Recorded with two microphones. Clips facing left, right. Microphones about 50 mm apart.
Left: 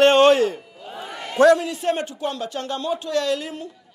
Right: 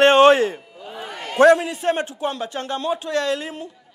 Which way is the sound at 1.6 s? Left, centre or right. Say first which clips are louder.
Right 1 dB; centre.